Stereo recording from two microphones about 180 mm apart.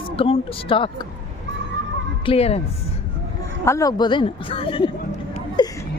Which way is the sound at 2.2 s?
35° left (ahead or behind).